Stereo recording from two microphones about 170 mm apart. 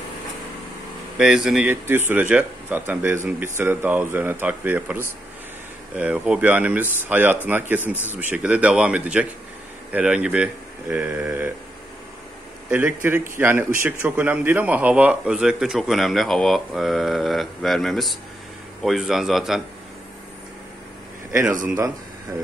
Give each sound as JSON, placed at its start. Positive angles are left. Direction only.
{"t": 1.1, "sound": "speech", "side_deg": -5}
{"t": 12.6, "sound": "a man's voice", "side_deg": -10}
{"t": 21.6, "sound": "speech", "side_deg": -20}